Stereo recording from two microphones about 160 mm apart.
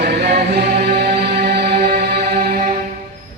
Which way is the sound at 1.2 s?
90° right.